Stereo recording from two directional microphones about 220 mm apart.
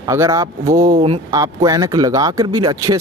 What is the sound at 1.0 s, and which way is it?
Speech, 25° right (ahead or behind).